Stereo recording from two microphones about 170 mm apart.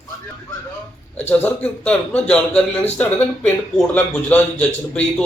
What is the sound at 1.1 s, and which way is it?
A man's voice, 10° left (ahead or behind).